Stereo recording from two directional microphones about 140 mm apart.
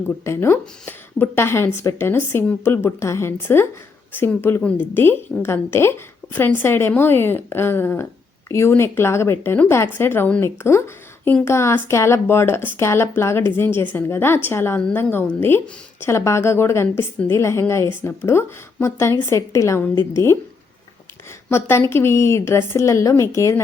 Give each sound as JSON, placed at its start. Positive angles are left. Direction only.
{"t": 0.3, "sound": "a woman's voice", "side_deg": 20}
{"t": 21.5, "sound": "a woman's voice", "side_deg": 15}